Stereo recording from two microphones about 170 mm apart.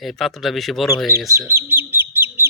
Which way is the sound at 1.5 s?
15° right (ahead or behind).